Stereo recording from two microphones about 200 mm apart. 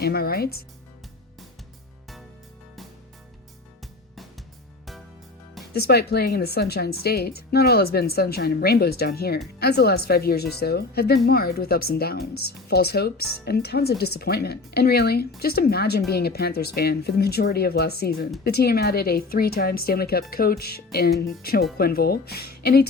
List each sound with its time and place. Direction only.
0.0 s a woman's voice: 50° left (ahead or behind)
3.8 s music: centre (ahead or behind)
5.7 s a woman's voice: 55° left (ahead or behind)